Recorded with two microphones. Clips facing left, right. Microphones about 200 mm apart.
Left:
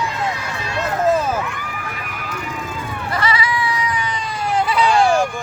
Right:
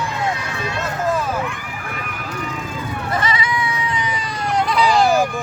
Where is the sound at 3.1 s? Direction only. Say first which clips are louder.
Left 1 dB; 20° right (ahead or behind).